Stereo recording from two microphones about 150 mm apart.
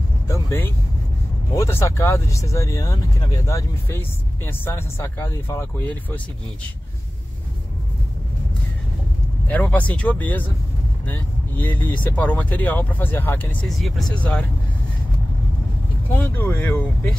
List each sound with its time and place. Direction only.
0.3 s vehicle: 15° left (ahead or behind)
1.5 s speech: 20° left (ahead or behind)
9.5 s speech: 10° left (ahead or behind)
13.7 s speech: centre (ahead or behind)
16.2 s speech: 15° left (ahead or behind)